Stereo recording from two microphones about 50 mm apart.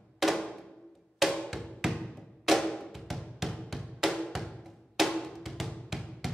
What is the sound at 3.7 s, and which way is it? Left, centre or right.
Music, centre.